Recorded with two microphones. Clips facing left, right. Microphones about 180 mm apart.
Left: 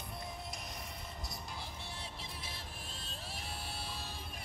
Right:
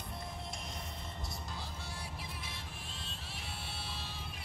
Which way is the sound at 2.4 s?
35° left (ahead or behind).